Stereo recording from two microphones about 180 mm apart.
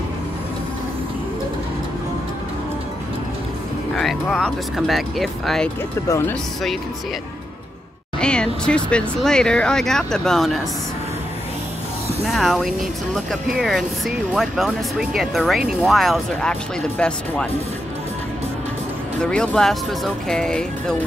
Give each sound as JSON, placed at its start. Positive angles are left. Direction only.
{"t": 3.9, "sound": "speech", "side_deg": 0}
{"t": 6.0, "sound": "speech", "side_deg": 15}
{"t": 8.2, "sound": "speech", "side_deg": 5}
{"t": 12.3, "sound": "speech", "side_deg": 0}
{"t": 19.3, "sound": "speech", "side_deg": 5}